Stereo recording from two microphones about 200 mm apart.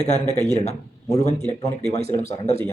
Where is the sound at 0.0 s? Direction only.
35° left (ahead or behind).